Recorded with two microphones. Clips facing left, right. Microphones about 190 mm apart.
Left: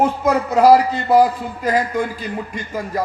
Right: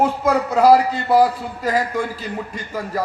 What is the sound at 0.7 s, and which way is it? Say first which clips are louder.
A man's voice: left 1 dB; 20° left (ahead or behind).